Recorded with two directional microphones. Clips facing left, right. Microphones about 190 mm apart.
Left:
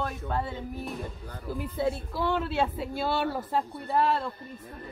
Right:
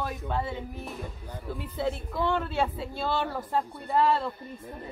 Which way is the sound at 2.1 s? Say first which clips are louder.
Even; 5° left (ahead or behind).